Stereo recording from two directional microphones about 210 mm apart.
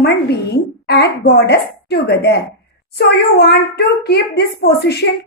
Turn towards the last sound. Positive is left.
turn(degrees=50)  # may be behind; listen again after turning